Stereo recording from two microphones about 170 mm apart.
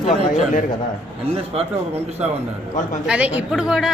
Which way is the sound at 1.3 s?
35° right (ahead or behind).